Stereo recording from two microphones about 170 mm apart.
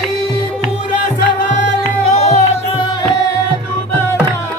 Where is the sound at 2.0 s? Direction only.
40° left (ahead or behind).